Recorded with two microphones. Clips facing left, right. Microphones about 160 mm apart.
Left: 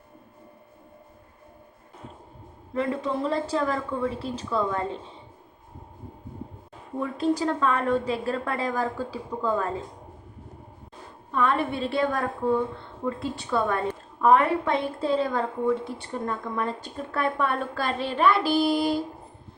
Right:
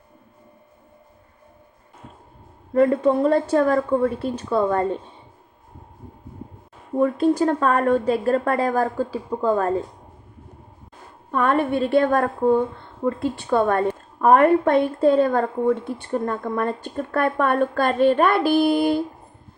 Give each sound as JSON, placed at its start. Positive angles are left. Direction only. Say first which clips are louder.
{"t": 2.7, "sound": "a woman's voice", "louder": "right 10 dB", "side_deg": -50}
{"t": 7.0, "sound": "a woman's voice", "louder": "right 7 dB", "side_deg": -50}
{"t": 11.3, "sound": "a woman's voice", "louder": "right 5 dB", "side_deg": -50}